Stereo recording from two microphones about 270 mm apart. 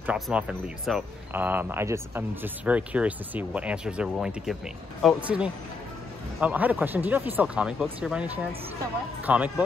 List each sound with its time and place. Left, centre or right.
0.0 s speech: centre